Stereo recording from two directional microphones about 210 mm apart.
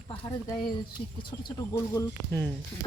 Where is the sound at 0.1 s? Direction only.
25° left (ahead or behind).